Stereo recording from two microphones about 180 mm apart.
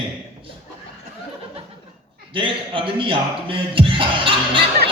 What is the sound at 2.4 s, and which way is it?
Speech, 30° right (ahead or behind).